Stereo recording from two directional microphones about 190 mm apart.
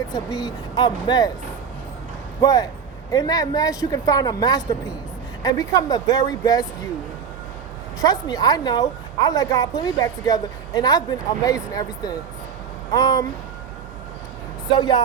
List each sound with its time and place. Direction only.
0.1 s a woman's voice: 20° left (ahead or behind)
2.4 s a woman's voice: 20° left (ahead or behind)
8.0 s a woman's voice: 20° left (ahead or behind)
14.7 s a woman's voice: 25° left (ahead or behind)